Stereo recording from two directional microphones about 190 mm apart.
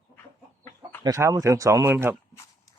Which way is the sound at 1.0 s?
15° right (ahead or behind).